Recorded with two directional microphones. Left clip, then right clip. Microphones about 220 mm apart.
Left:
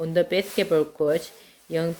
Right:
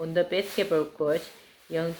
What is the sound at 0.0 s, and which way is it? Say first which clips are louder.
Speech: left 3 dB; 45° left (ahead or behind).